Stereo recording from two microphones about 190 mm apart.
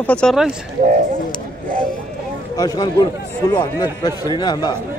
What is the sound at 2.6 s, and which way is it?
A man's voice, 20° left (ahead or behind).